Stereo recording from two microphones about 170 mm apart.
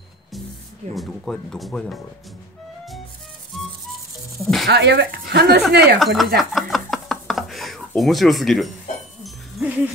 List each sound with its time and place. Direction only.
0.9 s speech: 5° left (ahead or behind)
4.4 s speech: centre (ahead or behind)
4.6 s speech: 80° right
5.9 s a sound: centre (ahead or behind)
9.2 s music: centre (ahead or behind)